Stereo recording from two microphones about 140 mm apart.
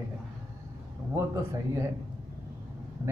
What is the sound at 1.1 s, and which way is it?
Speech, 20° right (ahead or behind).